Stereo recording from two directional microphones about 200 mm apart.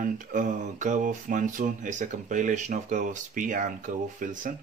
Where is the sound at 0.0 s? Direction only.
40° right (ahead or behind).